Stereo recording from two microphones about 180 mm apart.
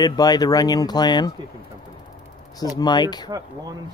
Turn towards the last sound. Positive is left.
turn(degrees=25)  # may be behind; listen again after turning